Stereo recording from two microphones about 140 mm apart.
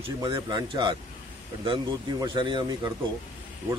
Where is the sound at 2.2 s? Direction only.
35° right (ahead or behind).